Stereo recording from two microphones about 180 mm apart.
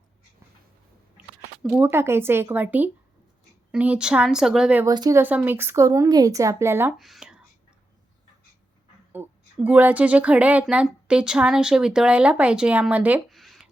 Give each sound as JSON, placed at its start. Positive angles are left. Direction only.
{"t": 1.6, "sound": "a woman's voice", "side_deg": -5}
{"t": 4.9, "sound": "speech", "side_deg": -20}
{"t": 6.9, "sound": "speech", "side_deg": 0}
{"t": 9.1, "sound": "speech", "side_deg": -10}